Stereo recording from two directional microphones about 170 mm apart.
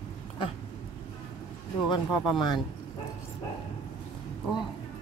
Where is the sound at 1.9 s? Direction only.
25° left (ahead or behind).